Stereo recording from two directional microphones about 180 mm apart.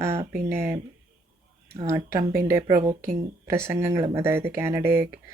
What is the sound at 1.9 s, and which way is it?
Speech, 15° right (ahead or behind).